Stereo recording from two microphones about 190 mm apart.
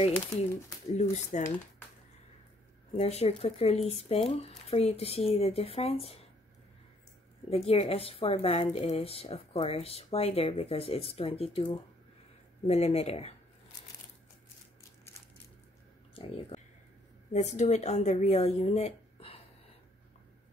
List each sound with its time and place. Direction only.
0.9 s speech: 40° left (ahead or behind)
2.9 s speech: 35° left (ahead or behind)
7.4 s speech: 30° left (ahead or behind)
16.2 s speech: 30° left (ahead or behind)